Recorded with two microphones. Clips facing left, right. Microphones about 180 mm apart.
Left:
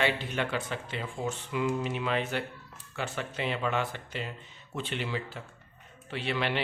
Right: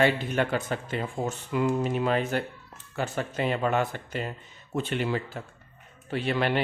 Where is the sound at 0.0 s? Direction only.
45° right (ahead or behind).